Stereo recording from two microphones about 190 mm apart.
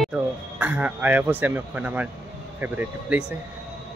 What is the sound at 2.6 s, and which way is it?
Speech, 10° right (ahead or behind).